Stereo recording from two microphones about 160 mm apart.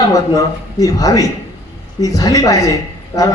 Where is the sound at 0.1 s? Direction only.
20° left (ahead or behind).